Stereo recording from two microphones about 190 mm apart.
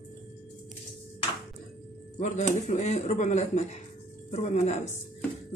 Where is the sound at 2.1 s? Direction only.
40° left (ahead or behind).